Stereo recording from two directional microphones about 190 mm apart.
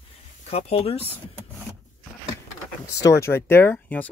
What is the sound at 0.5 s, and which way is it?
Speech, 35° left (ahead or behind).